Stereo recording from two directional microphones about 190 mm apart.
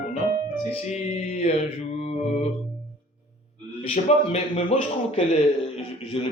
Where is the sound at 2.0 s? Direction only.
35° left (ahead or behind).